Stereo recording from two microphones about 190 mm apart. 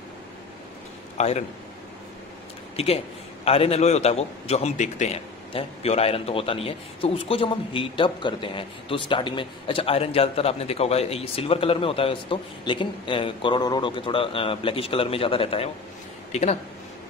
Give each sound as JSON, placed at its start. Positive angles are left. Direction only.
{"t": 1.1, "sound": "a man's voice", "side_deg": 35}
{"t": 2.7, "sound": "a man's voice", "side_deg": 30}